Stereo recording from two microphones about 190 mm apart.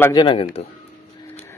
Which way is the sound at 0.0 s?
20° left (ahead or behind).